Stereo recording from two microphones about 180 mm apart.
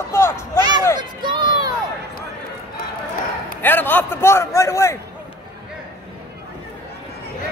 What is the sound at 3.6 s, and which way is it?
Speech, 10° left (ahead or behind).